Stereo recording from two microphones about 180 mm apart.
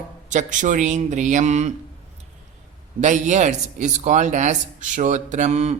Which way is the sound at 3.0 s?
40° right (ahead or behind).